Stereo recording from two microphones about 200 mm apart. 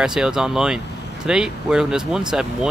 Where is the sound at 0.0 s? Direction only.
5° right (ahead or behind).